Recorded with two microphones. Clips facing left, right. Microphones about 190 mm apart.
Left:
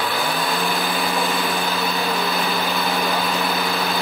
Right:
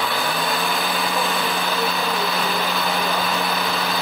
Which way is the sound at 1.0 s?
15° left (ahead or behind).